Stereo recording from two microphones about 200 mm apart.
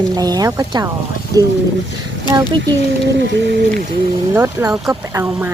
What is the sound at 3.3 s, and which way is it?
Speech, 60° right (ahead or behind).